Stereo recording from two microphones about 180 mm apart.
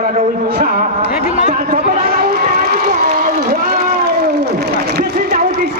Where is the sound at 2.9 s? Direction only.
55° right (ahead or behind).